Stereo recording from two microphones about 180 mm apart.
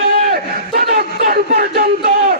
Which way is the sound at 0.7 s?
55° right (ahead or behind).